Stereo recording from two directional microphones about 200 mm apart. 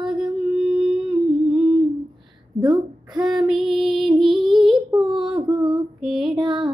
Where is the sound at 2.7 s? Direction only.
20° right (ahead or behind).